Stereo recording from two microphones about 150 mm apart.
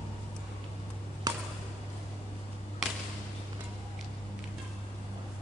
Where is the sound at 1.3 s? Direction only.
25° right (ahead or behind).